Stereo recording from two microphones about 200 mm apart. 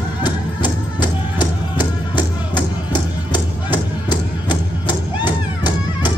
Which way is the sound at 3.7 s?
20° left (ahead or behind).